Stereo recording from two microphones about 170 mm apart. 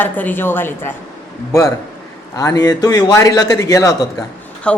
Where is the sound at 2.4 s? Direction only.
20° left (ahead or behind).